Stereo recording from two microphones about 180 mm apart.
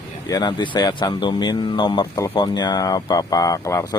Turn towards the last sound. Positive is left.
turn(degrees=20)  # may be behind; listen again after turning